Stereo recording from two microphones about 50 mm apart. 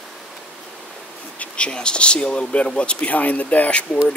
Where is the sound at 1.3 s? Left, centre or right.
Left.